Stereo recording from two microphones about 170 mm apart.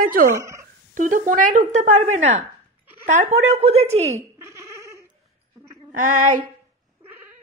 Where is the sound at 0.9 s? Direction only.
50° right (ahead or behind).